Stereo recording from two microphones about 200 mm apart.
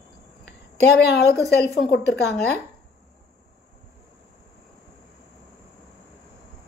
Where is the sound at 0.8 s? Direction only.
55° left (ahead or behind).